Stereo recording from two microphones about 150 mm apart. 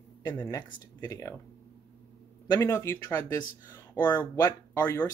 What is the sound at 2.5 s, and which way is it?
Speech, 20° left (ahead or behind).